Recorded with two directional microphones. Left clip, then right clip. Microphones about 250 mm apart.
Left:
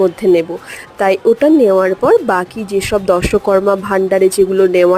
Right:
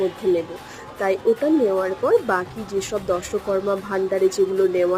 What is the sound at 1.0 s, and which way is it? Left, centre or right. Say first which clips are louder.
Speech: left 9 dB; left.